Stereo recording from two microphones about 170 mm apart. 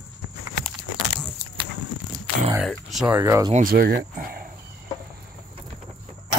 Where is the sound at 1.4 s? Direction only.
15° left (ahead or behind).